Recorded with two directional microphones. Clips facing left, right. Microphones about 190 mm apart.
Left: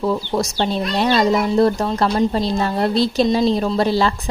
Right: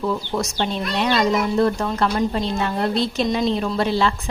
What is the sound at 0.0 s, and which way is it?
Speech, 35° left (ahead or behind).